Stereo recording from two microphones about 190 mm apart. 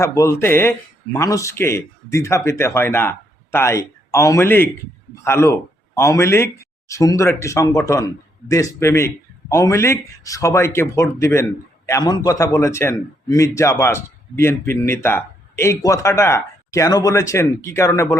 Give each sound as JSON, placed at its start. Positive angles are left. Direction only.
{"t": 0.0, "sound": "speech", "side_deg": 15}